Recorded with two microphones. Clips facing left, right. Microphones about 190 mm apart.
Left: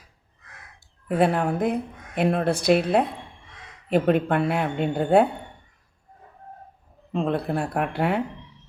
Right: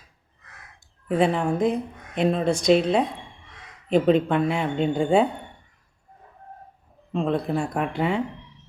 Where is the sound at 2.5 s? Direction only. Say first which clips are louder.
Right 2 dB; 60° left (ahead or behind).